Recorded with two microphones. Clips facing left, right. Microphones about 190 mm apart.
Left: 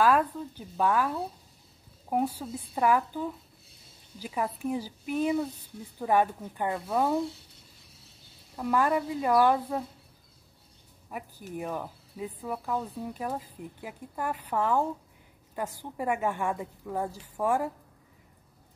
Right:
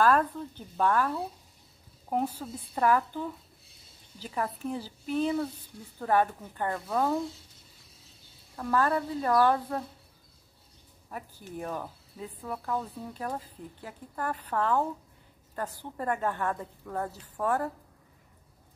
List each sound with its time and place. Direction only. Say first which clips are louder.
0.0 s speech: even; 10° left (ahead or behind)
8.5 s speech: left 1 dB; 10° left (ahead or behind)
11.1 s speech: left 2 dB; 10° left (ahead or behind)